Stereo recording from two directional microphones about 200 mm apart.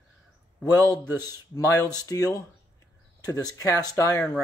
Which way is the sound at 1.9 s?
15° left (ahead or behind).